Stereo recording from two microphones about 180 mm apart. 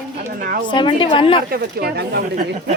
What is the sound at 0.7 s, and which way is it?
Speech, 25° left (ahead or behind).